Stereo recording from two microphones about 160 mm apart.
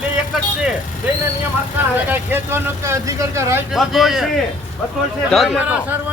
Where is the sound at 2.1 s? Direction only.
15° right (ahead or behind).